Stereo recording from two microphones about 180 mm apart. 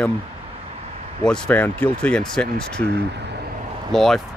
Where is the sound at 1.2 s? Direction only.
5° left (ahead or behind).